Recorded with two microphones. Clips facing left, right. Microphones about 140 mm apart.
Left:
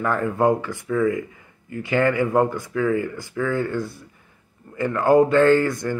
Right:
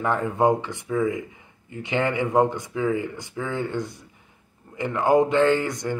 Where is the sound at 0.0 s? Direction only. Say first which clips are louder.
Left 1 dB; 20° right (ahead or behind).